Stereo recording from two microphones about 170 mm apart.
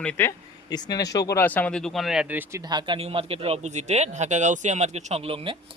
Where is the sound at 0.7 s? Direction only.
25° left (ahead or behind).